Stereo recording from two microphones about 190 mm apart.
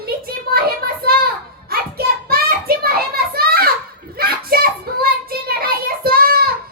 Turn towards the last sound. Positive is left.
turn(degrees=-50)  # may be behind; listen again after turning